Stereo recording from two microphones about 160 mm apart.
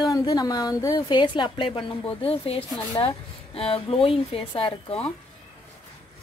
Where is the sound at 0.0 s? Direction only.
25° left (ahead or behind).